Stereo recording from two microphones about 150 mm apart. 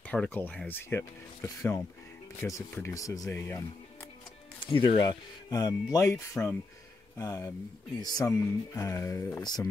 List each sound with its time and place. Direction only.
0.0 s speech: 10° left (ahead or behind)
4.6 s speech: 30° left (ahead or behind)